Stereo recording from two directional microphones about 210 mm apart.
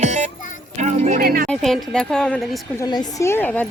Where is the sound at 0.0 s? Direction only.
35° right (ahead or behind).